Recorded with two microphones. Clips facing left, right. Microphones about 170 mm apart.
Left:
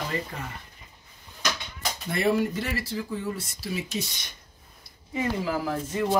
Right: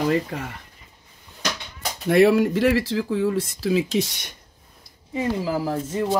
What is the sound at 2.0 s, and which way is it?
Speech, 75° right (ahead or behind).